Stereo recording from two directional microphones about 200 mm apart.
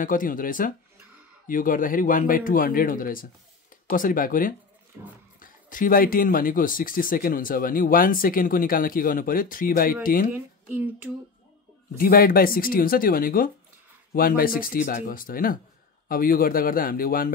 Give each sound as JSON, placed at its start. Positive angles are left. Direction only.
{"t": 0.0, "sound": "speech", "side_deg": 45}
{"t": 10.3, "sound": "speech", "side_deg": -10}
{"t": 12.0, "sound": "speech", "side_deg": 45}